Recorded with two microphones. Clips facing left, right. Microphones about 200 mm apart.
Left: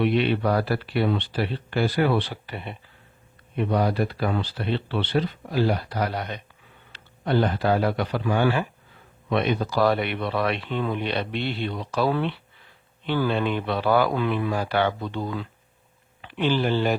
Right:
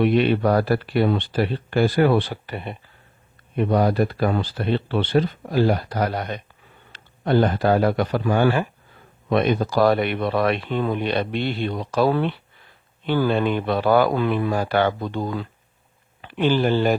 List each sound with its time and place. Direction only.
0.0 s a man's voice: 45° right (ahead or behind)